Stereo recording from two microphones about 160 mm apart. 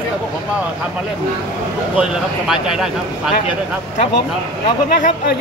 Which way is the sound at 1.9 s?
5° right (ahead or behind).